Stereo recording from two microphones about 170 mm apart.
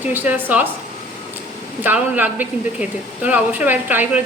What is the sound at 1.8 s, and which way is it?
Speech, 10° right (ahead or behind).